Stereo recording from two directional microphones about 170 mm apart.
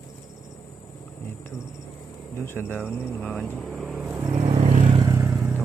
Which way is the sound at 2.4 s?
10° left (ahead or behind).